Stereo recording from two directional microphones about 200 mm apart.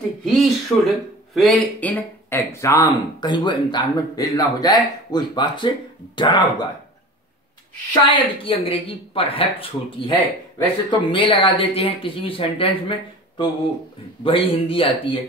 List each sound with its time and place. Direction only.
0.2 s speech: centre (ahead or behind); by 6.7 s 20° left (ahead or behind)
7.9 s speech: 25° left (ahead or behind)
14.2 s speech: 25° left (ahead or behind)